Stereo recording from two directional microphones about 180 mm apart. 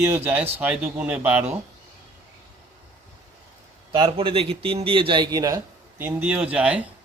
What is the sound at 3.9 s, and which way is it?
A man's voice, 30° right (ahead or behind).